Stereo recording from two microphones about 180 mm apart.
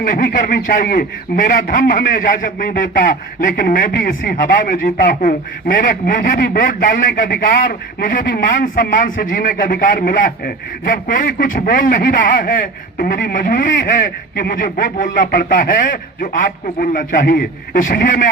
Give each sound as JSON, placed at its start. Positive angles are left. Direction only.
{"t": 0.0, "sound": "a man's voice", "side_deg": 50}